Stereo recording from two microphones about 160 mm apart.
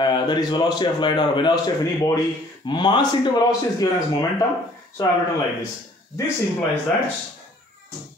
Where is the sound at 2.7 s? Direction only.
30° left (ahead or behind).